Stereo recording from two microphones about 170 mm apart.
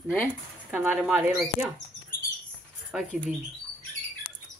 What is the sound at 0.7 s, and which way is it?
Speech, 10° right (ahead or behind).